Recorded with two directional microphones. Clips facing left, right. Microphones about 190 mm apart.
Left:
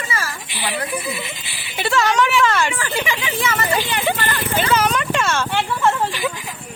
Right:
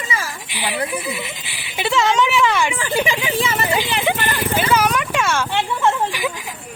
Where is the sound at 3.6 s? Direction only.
15° right (ahead or behind).